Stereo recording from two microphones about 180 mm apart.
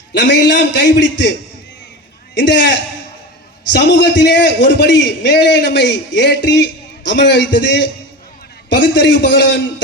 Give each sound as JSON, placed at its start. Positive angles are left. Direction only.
{"t": 0.1, "sound": "a man's voice", "side_deg": 80}
{"t": 2.3, "sound": "a man's voice", "side_deg": 80}